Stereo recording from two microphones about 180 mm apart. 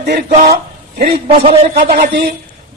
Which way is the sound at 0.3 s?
50° right (ahead or behind).